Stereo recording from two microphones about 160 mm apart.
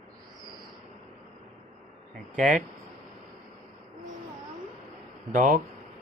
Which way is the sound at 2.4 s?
50° right (ahead or behind).